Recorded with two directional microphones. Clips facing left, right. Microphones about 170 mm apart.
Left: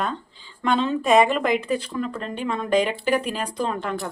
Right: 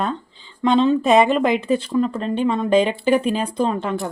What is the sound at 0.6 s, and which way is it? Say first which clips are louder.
Speech: right 5 dB; 20° right (ahead or behind).